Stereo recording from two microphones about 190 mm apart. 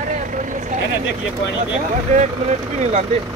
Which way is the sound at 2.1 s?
40° right (ahead or behind).